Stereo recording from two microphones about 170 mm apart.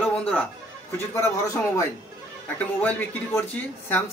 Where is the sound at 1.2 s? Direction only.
15° left (ahead or behind).